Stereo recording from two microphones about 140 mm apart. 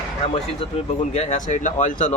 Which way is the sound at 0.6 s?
40° left (ahead or behind).